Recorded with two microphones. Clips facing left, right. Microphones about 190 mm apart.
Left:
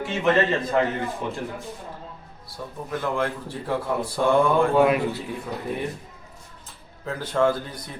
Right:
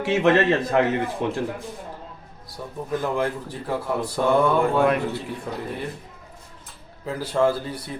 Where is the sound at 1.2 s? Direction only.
75° right (ahead or behind).